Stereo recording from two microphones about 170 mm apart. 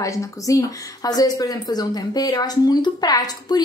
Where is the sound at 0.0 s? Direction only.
20° left (ahead or behind).